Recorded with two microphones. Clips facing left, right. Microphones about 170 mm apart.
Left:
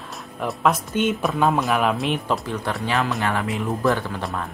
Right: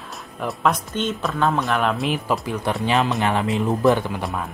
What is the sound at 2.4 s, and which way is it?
Speech, 15° right (ahead or behind).